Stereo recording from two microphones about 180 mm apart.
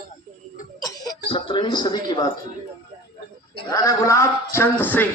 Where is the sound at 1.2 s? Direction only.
30° left (ahead or behind).